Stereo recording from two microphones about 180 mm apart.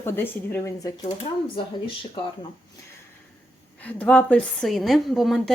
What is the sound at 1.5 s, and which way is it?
Speech, 30° left (ahead or behind).